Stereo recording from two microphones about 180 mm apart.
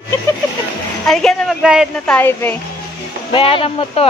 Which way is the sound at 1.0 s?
Centre (ahead or behind).